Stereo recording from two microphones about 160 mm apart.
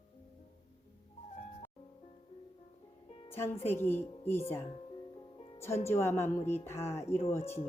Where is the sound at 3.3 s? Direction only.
15° left (ahead or behind).